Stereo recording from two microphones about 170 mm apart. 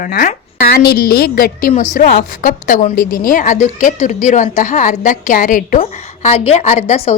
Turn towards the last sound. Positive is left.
turn(degrees=40)  # may be behind; listen again after turning